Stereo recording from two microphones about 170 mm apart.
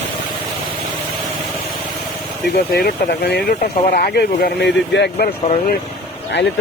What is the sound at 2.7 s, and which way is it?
Speech, 70° left (ahead or behind).